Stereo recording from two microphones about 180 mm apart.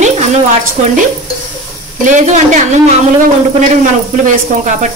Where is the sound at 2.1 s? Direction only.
45° right (ahead or behind).